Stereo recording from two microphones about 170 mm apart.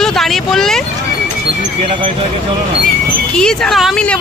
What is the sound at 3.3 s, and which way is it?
Speech, 5° left (ahead or behind).